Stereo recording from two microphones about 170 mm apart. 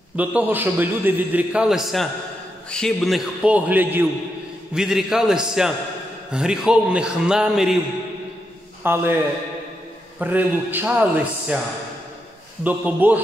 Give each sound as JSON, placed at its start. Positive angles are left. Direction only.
{"t": 0.1, "sound": "a man's voice", "side_deg": -10}
{"t": 8.8, "sound": "a man's voice", "side_deg": -15}
{"t": 10.1, "sound": "a man's voice", "side_deg": -10}
{"t": 12.6, "sound": "a man's voice", "side_deg": -10}